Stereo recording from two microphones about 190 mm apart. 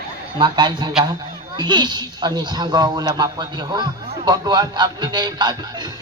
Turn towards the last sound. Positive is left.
turn(degrees=-20)  # may be behind; listen again after turning